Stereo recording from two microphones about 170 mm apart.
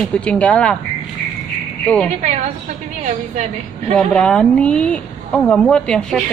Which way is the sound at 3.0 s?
45° right (ahead or behind).